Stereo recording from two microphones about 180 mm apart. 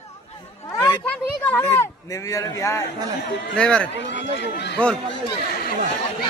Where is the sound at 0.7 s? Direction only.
15° left (ahead or behind).